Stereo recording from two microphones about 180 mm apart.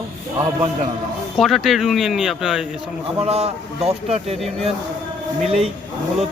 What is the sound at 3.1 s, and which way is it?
A man's voice, 35° right (ahead or behind).